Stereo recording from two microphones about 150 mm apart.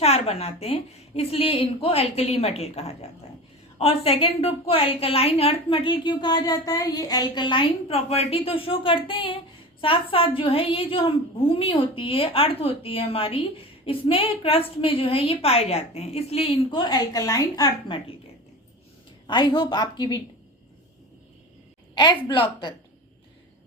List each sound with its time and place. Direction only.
0.0 s a woman's voice: 45° left (ahead or behind)
19.3 s a woman's voice: 30° left (ahead or behind)
21.9 s speech: 30° left (ahead or behind)